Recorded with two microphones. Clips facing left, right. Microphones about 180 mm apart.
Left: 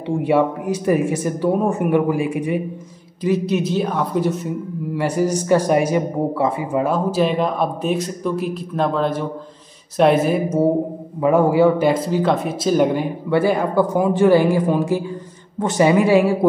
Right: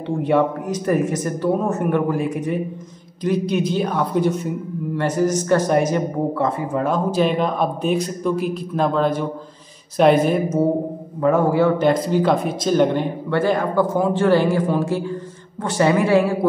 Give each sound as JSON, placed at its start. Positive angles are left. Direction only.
{"t": 0.2, "sound": "a man's voice", "side_deg": 10}